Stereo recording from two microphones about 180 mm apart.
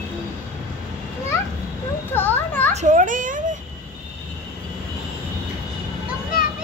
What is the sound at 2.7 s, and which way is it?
Speech, 45° right (ahead or behind).